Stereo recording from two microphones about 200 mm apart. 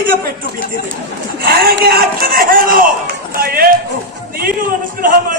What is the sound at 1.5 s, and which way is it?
A man's voice, 50° right (ahead or behind).